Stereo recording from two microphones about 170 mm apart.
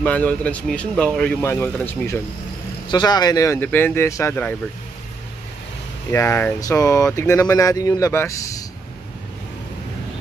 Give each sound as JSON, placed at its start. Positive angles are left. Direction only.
{"t": 0.0, "sound": "speech", "side_deg": 10}
{"t": 2.9, "sound": "speech", "side_deg": 25}
{"t": 6.1, "sound": "speech", "side_deg": 15}